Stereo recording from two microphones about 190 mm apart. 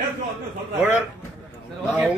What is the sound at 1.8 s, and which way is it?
Speech, 5° right (ahead or behind).